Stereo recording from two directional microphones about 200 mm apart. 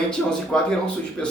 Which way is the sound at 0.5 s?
5° left (ahead or behind).